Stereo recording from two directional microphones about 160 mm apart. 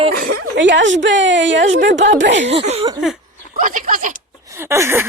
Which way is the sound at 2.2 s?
90° right.